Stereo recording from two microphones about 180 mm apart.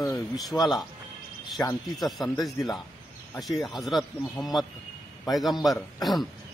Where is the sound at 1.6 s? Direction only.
15° left (ahead or behind).